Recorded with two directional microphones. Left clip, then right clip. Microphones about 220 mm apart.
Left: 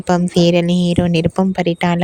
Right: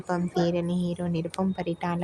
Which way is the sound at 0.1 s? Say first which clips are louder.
Left 13 dB; 40° left (ahead or behind).